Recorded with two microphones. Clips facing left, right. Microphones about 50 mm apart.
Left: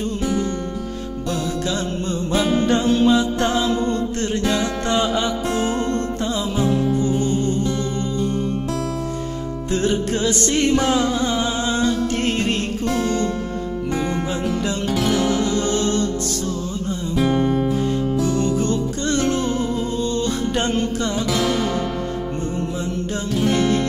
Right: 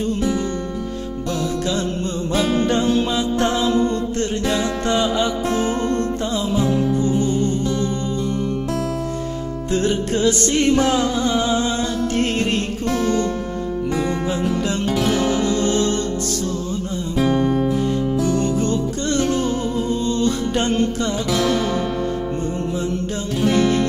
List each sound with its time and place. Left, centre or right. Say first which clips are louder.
2.3 s music: even; centre
2.6 s music: even; centre
6.6 s music: left 1 dB; right
7.1 s music: right 1 dB; left
12.4 s music: right 1 dB; right
14.4 s music: right 2 dB; right
17.5 s music: right 1 dB; centre
18.0 s music: right 1 dB; right
23.4 s music: right 2 dB; left